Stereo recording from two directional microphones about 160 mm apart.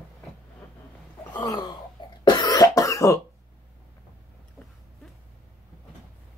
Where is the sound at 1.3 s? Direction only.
25° left (ahead or behind).